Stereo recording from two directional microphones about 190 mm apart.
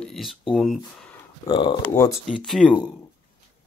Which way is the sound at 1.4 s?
25° left (ahead or behind).